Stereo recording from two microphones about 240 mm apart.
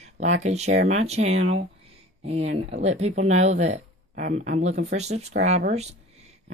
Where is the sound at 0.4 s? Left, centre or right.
Right.